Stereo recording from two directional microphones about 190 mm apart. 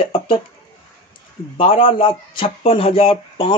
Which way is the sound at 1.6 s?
30° left (ahead or behind).